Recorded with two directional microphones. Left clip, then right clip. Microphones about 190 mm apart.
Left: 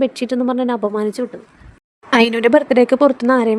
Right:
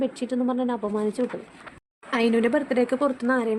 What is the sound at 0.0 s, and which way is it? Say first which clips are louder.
A woman's voice: left 8 dB; 40° left (ahead or behind).